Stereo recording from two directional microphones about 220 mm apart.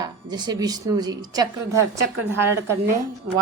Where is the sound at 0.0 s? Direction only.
20° right (ahead or behind).